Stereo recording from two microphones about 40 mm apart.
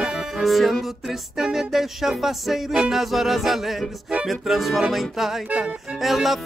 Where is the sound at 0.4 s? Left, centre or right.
Centre.